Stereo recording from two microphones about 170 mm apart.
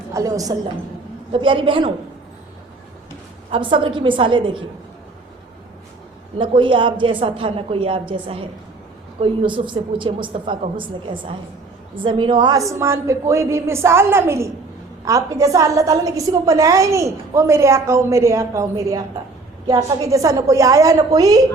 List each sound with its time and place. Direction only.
0.1 s a woman's voice: 20° right (ahead or behind)
3.5 s a woman's voice: 30° right (ahead or behind)
6.4 s a woman's voice: 30° right (ahead or behind)